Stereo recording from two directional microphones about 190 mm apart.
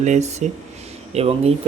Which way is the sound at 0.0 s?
35° right (ahead or behind).